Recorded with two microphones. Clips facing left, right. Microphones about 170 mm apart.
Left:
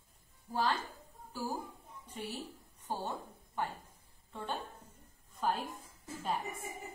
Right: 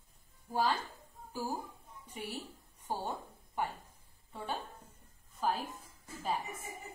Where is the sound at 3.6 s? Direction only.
10° right (ahead or behind).